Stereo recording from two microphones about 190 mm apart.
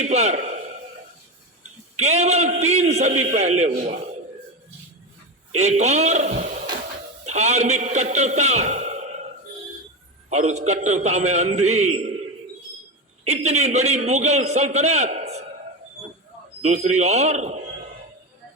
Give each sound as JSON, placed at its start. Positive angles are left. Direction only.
{"t": 0.0, "sound": "a man's voice", "side_deg": -35}
{"t": 2.0, "sound": "a man's voice", "side_deg": -35}
{"t": 5.5, "sound": "a man's voice", "side_deg": -35}
{"t": 10.2, "sound": "a man's voice", "side_deg": -35}
{"t": 13.2, "sound": "a man's voice", "side_deg": -35}
{"t": 16.6, "sound": "a man's voice", "side_deg": -35}